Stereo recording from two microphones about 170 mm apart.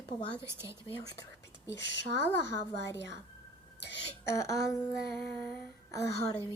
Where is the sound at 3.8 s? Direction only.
90° left.